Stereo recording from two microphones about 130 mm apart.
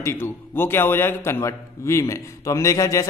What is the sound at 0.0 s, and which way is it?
A man's voice, 20° left (ahead or behind).